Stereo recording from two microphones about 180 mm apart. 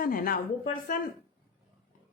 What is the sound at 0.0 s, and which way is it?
A woman's voice, 55° left (ahead or behind).